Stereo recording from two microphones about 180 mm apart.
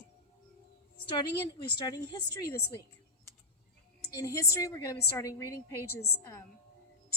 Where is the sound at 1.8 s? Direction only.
20° left (ahead or behind).